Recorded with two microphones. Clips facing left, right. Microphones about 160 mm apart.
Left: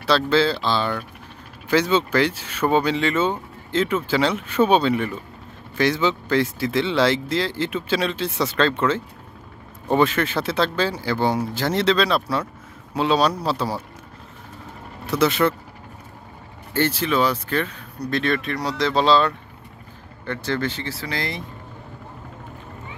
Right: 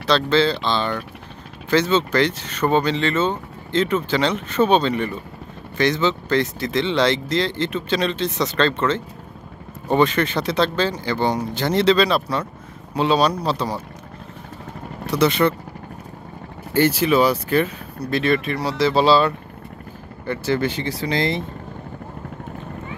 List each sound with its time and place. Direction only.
0.0 s speech: 5° left (ahead or behind)
15.0 s speech: centre (ahead or behind)
16.7 s speech: 10° right (ahead or behind)